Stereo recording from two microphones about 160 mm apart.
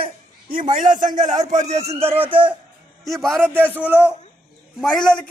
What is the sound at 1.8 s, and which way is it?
Speech, 15° right (ahead or behind).